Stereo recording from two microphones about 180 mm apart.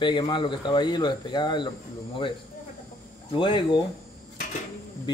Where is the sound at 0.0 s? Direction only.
25° left (ahead or behind).